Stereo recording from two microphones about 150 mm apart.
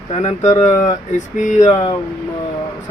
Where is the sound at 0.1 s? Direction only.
45° left (ahead or behind).